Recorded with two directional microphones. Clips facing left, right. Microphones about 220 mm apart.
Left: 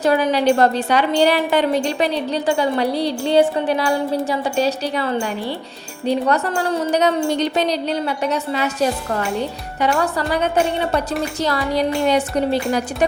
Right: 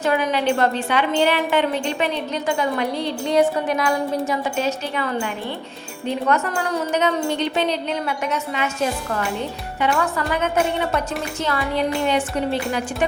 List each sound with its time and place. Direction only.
0.0 s a woman's voice: 35° left (ahead or behind)